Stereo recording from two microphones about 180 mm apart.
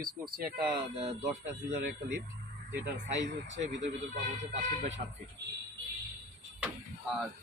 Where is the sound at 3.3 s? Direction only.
75° right (ahead or behind).